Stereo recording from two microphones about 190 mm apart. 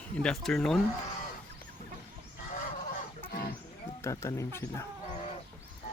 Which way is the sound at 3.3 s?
50° left (ahead or behind).